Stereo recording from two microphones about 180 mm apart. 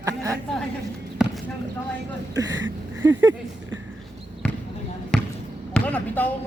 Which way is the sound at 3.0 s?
15° right (ahead or behind).